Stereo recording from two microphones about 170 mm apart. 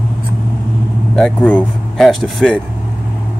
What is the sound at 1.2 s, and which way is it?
Speech, 5° left (ahead or behind).